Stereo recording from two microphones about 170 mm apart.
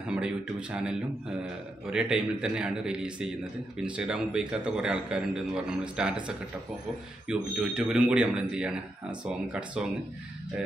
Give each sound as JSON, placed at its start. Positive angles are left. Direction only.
{"t": 0.1, "sound": "a man's voice", "side_deg": -5}